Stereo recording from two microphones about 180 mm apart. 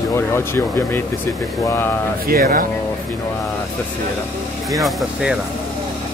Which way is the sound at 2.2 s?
55° right (ahead or behind).